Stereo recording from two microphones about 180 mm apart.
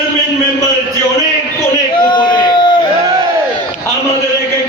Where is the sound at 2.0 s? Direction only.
25° left (ahead or behind).